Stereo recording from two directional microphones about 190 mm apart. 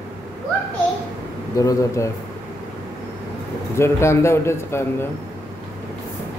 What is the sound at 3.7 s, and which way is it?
A man's voice, 15° left (ahead or behind).